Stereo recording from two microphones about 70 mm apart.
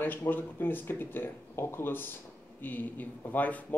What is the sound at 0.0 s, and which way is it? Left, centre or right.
Speech, left.